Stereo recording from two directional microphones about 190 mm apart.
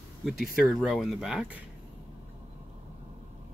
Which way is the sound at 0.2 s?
Centre (ahead or behind).